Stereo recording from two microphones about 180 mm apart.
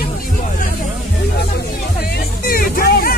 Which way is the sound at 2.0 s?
55° left (ahead or behind).